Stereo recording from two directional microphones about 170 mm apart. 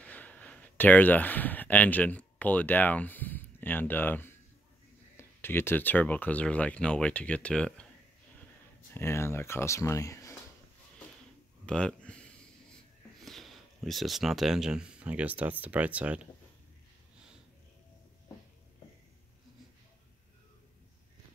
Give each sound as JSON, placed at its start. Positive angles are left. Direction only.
{"t": 0.0, "sound": "speech", "side_deg": 10}
{"t": 8.9, "sound": "speech", "side_deg": 15}
{"t": 11.6, "sound": "a sound", "side_deg": 5}
{"t": 13.2, "sound": "speech", "side_deg": 0}